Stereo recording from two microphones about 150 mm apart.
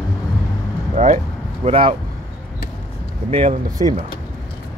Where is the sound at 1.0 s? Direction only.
50° right (ahead or behind).